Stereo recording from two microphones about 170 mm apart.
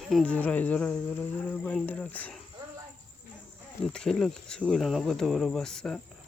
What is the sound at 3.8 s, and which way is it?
Speech, 5° left (ahead or behind).